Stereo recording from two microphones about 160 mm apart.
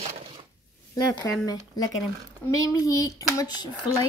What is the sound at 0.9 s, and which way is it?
Speech, 20° left (ahead or behind).